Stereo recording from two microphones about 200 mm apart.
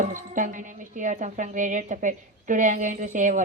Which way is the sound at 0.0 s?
40° right (ahead or behind).